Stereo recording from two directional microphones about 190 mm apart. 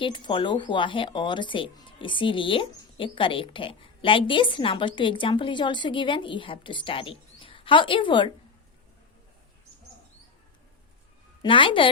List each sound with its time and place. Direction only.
0.0 s speech: 25° left (ahead or behind)
11.4 s speech: 25° left (ahead or behind)